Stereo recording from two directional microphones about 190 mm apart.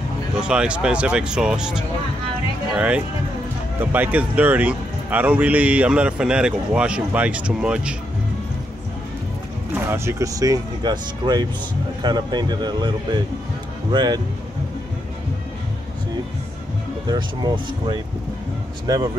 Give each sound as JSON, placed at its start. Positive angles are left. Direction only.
{"t": 0.4, "sound": "speech", "side_deg": -5}
{"t": 9.8, "sound": "speech", "side_deg": -15}
{"t": 17.1, "sound": "speech", "side_deg": -20}